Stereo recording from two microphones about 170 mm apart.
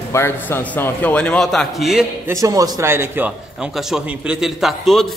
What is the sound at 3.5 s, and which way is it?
A man's voice, 5° right (ahead or behind).